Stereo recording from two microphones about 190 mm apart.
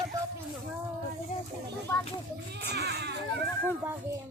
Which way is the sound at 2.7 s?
60° right (ahead or behind).